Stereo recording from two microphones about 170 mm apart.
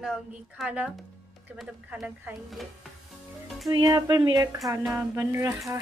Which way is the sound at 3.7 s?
25° right (ahead or behind).